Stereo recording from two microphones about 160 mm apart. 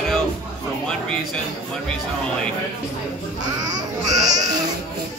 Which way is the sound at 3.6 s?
25° right (ahead or behind).